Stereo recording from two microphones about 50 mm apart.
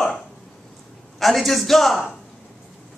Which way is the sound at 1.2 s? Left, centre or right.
Centre.